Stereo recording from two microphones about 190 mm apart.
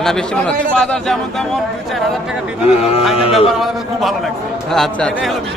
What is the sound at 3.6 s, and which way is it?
A man's voice, centre (ahead or behind).